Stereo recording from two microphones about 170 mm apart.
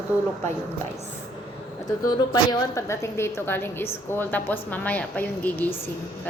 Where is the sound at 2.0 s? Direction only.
25° left (ahead or behind).